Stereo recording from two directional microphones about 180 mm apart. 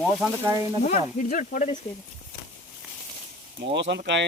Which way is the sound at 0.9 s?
45° left (ahead or behind).